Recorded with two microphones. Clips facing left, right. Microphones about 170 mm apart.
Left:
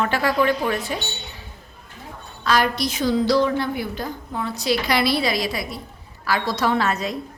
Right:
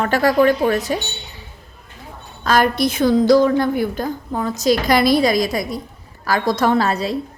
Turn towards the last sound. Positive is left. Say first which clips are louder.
# right 4 dB
turn(degrees=-35)  # may be behind; listen again after turning